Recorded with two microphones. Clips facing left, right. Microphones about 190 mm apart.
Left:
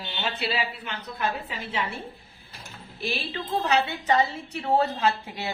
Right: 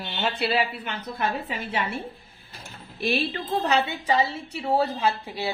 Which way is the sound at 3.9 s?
10° right (ahead or behind).